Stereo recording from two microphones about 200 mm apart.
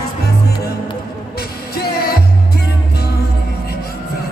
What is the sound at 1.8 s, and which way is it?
Music, 50° left (ahead or behind).